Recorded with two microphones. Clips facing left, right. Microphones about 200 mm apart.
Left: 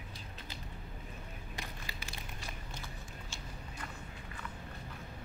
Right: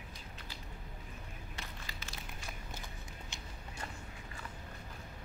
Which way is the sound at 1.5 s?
15° left (ahead or behind).